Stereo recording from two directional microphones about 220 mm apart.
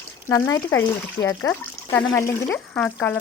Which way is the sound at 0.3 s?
15° left (ahead or behind).